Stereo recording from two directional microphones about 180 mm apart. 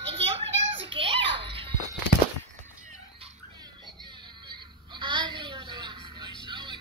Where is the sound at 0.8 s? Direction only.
30° right (ahead or behind).